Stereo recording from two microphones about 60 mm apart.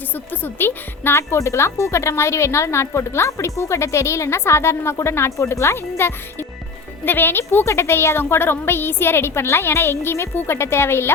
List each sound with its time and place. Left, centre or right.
0.1 s a woman's voice: left
1.1 s a woman's voice: left
7.6 s speech: left